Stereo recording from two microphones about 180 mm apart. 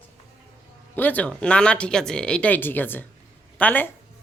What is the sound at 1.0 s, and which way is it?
Speech, 10° left (ahead or behind).